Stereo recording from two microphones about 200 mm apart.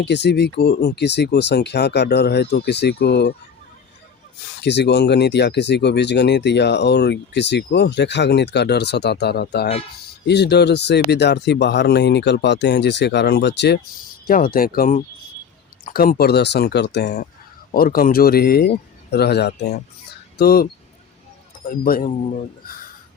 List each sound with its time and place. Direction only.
0.0 s speech: 60° left (ahead or behind)
4.6 s speech: 60° left (ahead or behind)
14.3 s speech: 45° left (ahead or behind)
17.7 s speech: 45° left (ahead or behind)